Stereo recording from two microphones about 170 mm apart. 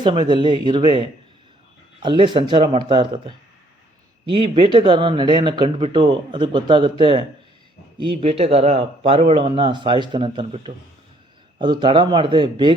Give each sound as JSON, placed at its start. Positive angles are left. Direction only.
{"t": 0.0, "sound": "speech", "side_deg": -25}